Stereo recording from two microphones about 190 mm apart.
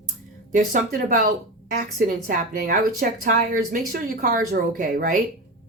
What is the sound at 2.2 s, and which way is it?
A woman's voice, 45° right (ahead or behind).